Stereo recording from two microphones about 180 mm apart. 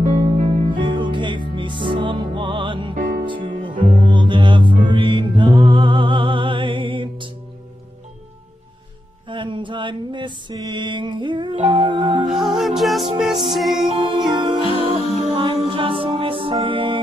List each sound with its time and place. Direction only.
0.7 s music: 25° right (ahead or behind)
3.0 s music: 50° right (ahead or behind)
3.3 s music: 25° right (ahead or behind)
9.3 s mantra: 25° right (ahead or behind)
11.6 s music: 25° right (ahead or behind)
12.3 s music: centre (ahead or behind)
13.9 s music: 25° right (ahead or behind)